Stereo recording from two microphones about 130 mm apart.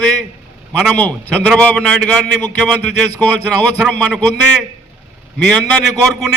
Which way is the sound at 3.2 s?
10° left (ahead or behind).